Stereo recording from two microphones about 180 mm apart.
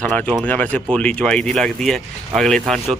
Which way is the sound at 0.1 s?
5° left (ahead or behind).